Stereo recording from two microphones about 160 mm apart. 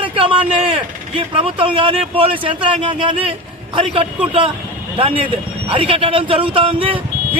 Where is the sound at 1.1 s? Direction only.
35° right (ahead or behind).